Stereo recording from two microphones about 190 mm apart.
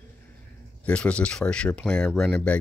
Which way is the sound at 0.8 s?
5° left (ahead or behind).